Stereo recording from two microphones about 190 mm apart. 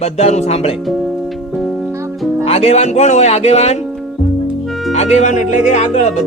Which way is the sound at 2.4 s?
30° left (ahead or behind).